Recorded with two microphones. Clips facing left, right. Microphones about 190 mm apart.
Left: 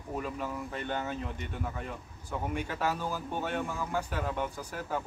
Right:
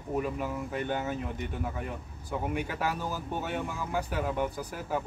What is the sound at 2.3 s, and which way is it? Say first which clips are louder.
Speech: right 2 dB; 10° right (ahead or behind).